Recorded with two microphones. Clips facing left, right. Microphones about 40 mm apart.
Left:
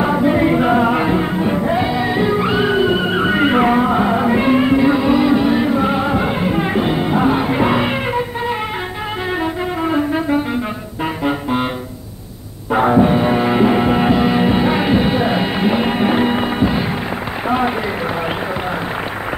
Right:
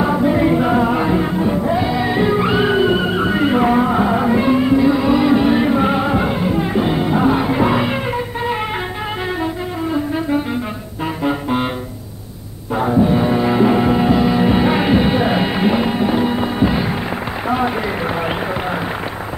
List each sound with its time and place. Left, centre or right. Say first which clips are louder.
0.0 s music: left 1 dB; centre
2.0 s music: even; centre
3.1 s music: left 1 dB; centre
3.7 s music: even; centre
4.4 s music: left 1 dB; left; by 6.3 s centre
6.5 s music: even; left
6.9 s music: right 1 dB; centre
12.7 s music: left 3 dB; left
13.1 s music: left 1 dB; left
14.5 s music: even; centre
16.0 s music: left 1 dB; left
16.5 s music: even; centre
17.5 s run: left 1 dB; centre